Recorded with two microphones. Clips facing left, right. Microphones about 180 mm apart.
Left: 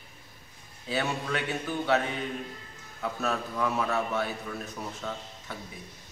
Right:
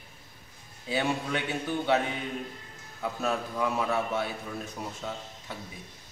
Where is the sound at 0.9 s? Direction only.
15° right (ahead or behind).